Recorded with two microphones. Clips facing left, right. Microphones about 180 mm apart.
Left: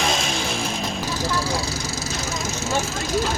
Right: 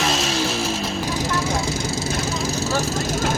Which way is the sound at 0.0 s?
Centre (ahead or behind).